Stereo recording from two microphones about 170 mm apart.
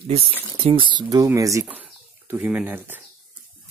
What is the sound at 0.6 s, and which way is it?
Speech, 30° right (ahead or behind).